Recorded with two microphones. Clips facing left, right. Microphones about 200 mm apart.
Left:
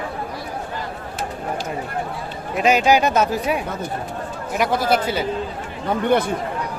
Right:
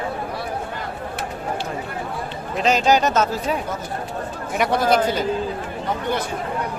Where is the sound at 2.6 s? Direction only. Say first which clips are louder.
Left 1 dB; 10° left (ahead or behind).